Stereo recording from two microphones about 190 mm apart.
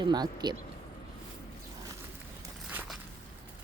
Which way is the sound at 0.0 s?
20° right (ahead or behind).